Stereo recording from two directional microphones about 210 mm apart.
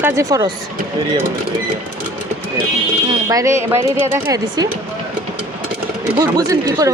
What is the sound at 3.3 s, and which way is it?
Speech, 15° right (ahead or behind).